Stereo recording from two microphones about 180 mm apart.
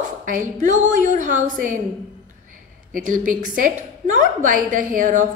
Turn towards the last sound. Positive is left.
turn(degrees=-45)  # may be behind; listen again after turning